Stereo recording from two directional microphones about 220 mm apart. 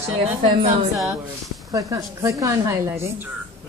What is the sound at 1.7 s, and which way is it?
A woman's voice, 15° right (ahead or behind).